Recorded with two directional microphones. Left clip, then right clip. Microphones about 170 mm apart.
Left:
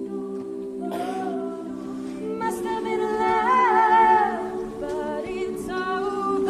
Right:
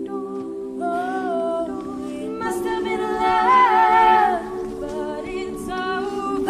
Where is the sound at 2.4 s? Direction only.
15° right (ahead or behind).